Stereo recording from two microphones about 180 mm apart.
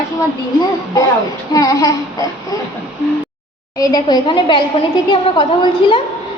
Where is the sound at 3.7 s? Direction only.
20° left (ahead or behind).